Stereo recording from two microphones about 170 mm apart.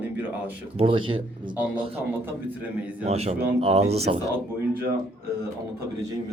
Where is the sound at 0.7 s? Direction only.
30° right (ahead or behind).